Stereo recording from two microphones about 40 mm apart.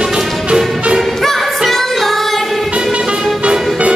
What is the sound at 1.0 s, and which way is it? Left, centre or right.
Music, centre.